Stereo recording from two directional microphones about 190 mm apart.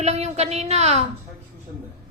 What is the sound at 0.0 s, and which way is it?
A woman's voice, 35° right (ahead or behind).